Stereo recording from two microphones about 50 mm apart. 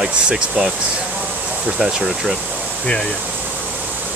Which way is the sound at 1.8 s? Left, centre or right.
Centre.